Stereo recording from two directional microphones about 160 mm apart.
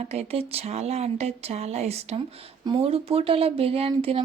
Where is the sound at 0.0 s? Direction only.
40° right (ahead or behind).